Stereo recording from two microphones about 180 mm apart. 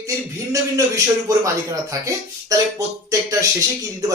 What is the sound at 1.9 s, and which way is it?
Speech, 20° right (ahead or behind).